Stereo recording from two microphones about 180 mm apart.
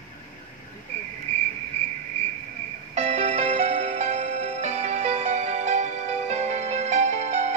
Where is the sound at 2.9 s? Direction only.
40° right (ahead or behind).